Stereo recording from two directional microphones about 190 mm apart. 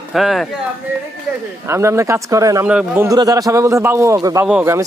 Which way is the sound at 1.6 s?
15° right (ahead or behind).